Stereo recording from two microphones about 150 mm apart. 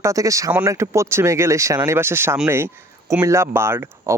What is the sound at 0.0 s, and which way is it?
Speech, 20° right (ahead or behind).